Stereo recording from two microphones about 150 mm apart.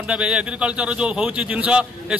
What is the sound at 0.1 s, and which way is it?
A man's voice, 5° right (ahead or behind).